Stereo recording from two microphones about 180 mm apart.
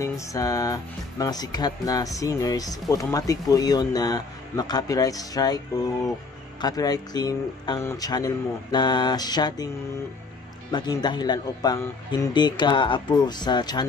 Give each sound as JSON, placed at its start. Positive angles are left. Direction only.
{"t": 0.0, "sound": "speech", "side_deg": 20}
{"t": 10.7, "sound": "speech", "side_deg": 25}